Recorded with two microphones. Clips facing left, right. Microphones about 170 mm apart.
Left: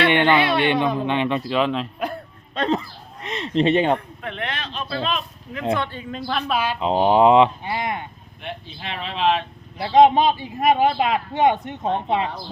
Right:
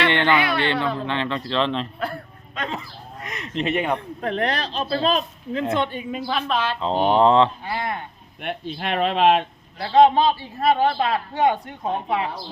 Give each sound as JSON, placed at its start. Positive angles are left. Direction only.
{"t": 0.1, "sound": "a man's voice", "side_deg": 20}
{"t": 2.6, "sound": "a sound", "side_deg": 35}
{"t": 4.2, "sound": "speech", "side_deg": -40}
{"t": 5.7, "sound": "a woman's voice", "side_deg": -15}
{"t": 6.5, "sound": "a man's voice", "side_deg": 10}
{"t": 8.4, "sound": "speech", "side_deg": -60}
{"t": 9.7, "sound": "a man's voice", "side_deg": 15}